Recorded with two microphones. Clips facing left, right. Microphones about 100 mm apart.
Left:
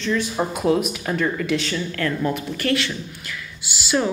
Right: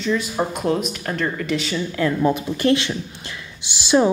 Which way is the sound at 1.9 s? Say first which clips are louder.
Right 6 dB; 15° right (ahead or behind).